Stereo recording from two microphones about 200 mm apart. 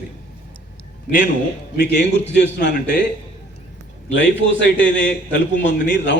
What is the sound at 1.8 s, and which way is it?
A man's voice, 60° left (ahead or behind).